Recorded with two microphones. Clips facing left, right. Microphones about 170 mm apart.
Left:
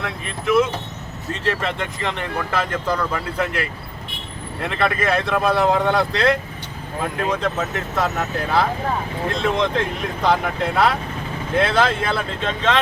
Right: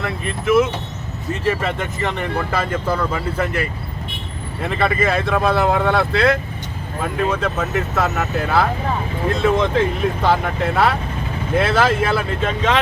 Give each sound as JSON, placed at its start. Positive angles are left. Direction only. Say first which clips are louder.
{"t": 0.0, "sound": "speech", "louder": "right 3 dB", "side_deg": 0}